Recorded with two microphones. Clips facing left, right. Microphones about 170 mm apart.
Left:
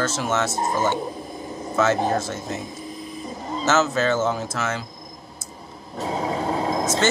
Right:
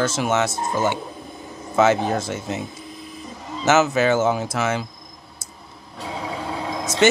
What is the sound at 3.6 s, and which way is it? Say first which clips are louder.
Speech: right 3 dB; 15° right (ahead or behind).